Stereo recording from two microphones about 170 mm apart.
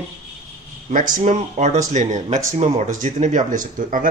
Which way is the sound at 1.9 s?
45° right (ahead or behind).